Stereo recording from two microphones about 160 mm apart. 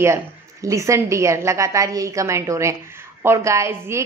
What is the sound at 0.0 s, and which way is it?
A woman's voice, 20° right (ahead or behind).